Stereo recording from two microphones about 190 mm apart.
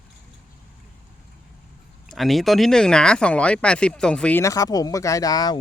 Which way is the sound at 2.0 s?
Centre (ahead or behind).